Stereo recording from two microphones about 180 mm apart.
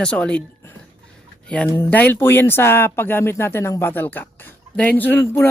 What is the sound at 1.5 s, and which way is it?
Speech, 10° left (ahead or behind).